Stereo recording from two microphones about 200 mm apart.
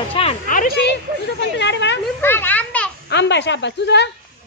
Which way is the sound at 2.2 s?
10° left (ahead or behind).